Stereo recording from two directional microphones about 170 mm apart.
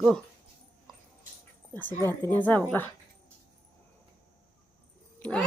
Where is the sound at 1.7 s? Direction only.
10° left (ahead or behind).